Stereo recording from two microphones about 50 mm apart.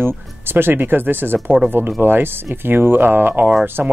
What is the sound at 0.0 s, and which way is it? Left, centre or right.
Speech, right.